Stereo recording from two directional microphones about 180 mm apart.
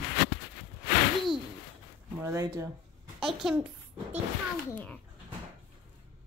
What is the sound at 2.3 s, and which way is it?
Speech, 15° right (ahead or behind).